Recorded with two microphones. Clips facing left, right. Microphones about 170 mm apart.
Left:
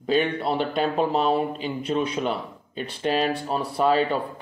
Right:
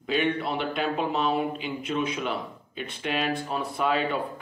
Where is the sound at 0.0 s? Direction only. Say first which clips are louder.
Left 3 dB; 35° left (ahead or behind).